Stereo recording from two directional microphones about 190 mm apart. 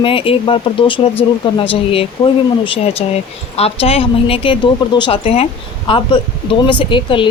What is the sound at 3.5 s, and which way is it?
Speech, 30° left (ahead or behind).